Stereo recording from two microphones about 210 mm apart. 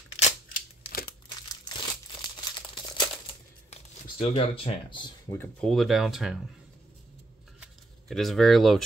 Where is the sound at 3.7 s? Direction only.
30° left (ahead or behind).